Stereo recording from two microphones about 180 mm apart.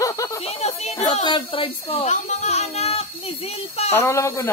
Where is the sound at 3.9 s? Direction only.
15° left (ahead or behind).